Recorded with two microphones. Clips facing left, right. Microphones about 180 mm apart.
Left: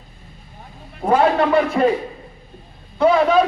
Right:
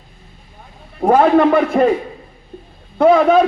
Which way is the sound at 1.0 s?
50° right (ahead or behind).